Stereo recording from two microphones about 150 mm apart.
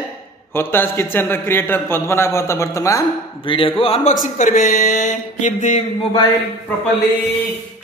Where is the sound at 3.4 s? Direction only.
35° left (ahead or behind).